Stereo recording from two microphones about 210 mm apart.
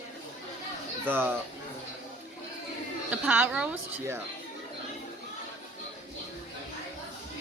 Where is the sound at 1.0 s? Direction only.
10° right (ahead or behind).